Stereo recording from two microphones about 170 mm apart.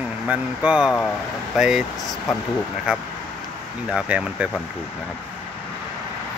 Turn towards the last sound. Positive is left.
turn(degrees=-5)  # may be behind; listen again after turning